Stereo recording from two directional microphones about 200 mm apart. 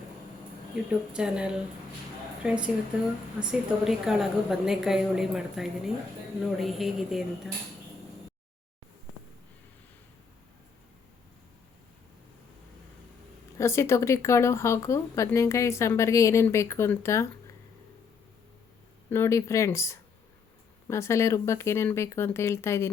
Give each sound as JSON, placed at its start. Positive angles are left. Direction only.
{"t": 0.9, "sound": "a woman's voice", "side_deg": -5}
{"t": 13.6, "sound": "speech", "side_deg": 15}
{"t": 19.1, "sound": "speech", "side_deg": 15}